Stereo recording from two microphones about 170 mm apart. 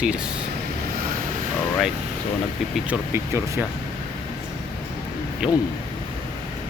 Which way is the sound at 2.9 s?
10° right (ahead or behind).